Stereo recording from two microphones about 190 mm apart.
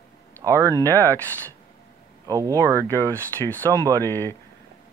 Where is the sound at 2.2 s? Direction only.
20° right (ahead or behind).